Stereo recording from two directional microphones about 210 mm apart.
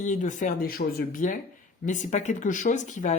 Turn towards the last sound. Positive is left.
turn(degrees=35)  # may be behind; listen again after turning